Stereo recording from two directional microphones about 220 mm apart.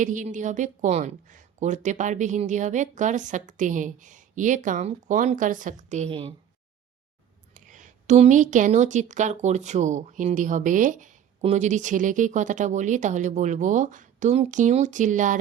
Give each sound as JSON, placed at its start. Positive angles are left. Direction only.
{"t": 0.0, "sound": "a woman's voice", "side_deg": -35}
{"t": 7.5, "sound": "a woman's voice", "side_deg": -35}